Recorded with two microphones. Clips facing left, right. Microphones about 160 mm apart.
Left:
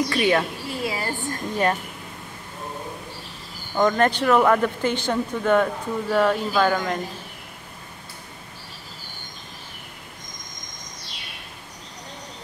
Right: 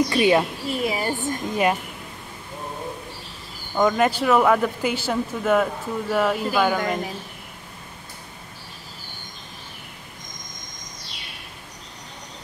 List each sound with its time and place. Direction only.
0.1 s speech: 15° right (ahead or behind)
3.7 s speech: 5° right (ahead or behind)